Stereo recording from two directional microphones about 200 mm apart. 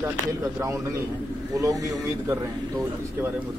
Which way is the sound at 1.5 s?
15° right (ahead or behind).